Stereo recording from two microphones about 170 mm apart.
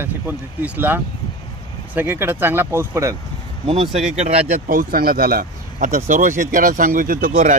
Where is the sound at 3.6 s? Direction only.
35° right (ahead or behind).